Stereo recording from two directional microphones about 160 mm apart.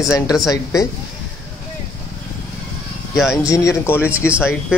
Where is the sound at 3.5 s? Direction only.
15° left (ahead or behind).